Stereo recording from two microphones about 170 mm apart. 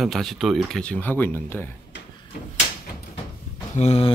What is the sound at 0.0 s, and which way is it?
Speech, centre (ahead or behind).